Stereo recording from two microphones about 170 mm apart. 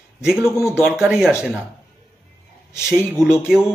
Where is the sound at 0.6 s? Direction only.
Centre (ahead or behind).